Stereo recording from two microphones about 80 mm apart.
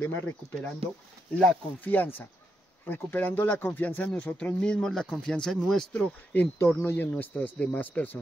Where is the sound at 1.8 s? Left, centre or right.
Left.